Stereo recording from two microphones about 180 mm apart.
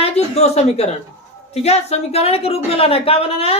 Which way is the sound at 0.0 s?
35° left (ahead or behind).